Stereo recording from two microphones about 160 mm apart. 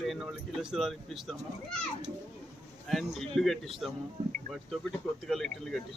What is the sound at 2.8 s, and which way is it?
Speech, centre (ahead or behind).